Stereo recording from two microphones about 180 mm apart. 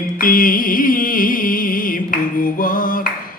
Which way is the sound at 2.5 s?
50° left (ahead or behind).